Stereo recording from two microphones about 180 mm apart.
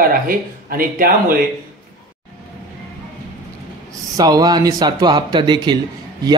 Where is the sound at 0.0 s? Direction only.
55° right (ahead or behind).